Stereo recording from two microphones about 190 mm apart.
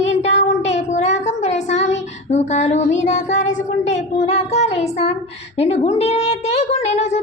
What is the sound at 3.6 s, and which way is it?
Female singing, 40° left (ahead or behind).